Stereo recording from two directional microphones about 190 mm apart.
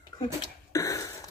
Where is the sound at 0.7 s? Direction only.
15° left (ahead or behind).